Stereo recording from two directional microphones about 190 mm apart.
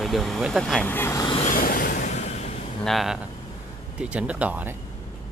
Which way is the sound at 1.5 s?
45° left (ahead or behind).